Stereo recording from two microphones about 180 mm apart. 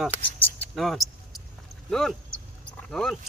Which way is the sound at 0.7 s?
Centre (ahead or behind).